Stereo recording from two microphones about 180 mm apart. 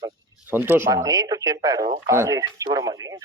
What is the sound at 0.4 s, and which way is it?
A man's voice, 10° right (ahead or behind).